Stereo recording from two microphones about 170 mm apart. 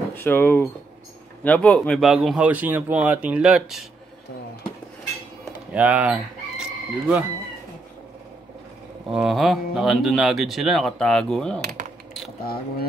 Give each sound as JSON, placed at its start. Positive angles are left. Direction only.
{"t": 0.1, "sound": "speech", "side_deg": 10}
{"t": 5.7, "sound": "chicken", "side_deg": -10}
{"t": 9.1, "sound": "speech", "side_deg": 0}